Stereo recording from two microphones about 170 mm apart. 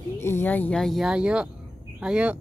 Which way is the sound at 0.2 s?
15° left (ahead or behind).